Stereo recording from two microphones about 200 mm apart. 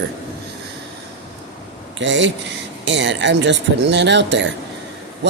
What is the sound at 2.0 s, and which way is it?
Speech, 65° right (ahead or behind).